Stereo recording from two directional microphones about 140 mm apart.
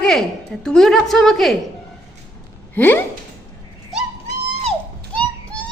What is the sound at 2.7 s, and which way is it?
Speech, 15° left (ahead or behind).